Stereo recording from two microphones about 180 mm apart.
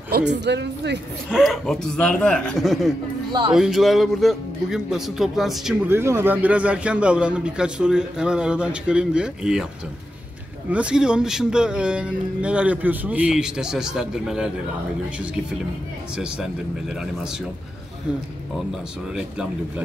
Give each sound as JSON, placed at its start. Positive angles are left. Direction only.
{"t": 0.1, "sound": "speech", "side_deg": -70}
{"t": 1.3, "sound": "a man's voice", "side_deg": 0}
{"t": 5.9, "sound": "a man's voice", "side_deg": -15}
{"t": 10.7, "sound": "a man's voice", "side_deg": -5}
{"t": 16.2, "sound": "a man's voice", "side_deg": -5}
{"t": 19.1, "sound": "a man's voice", "side_deg": -5}